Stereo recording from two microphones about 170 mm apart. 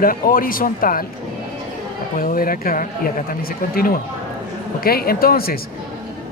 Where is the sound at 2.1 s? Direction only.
55° left (ahead or behind).